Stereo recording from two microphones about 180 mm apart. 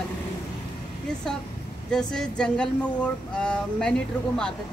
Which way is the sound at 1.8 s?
5° left (ahead or behind).